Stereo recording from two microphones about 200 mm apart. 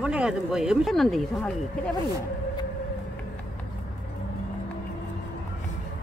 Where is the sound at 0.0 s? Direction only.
5° right (ahead or behind).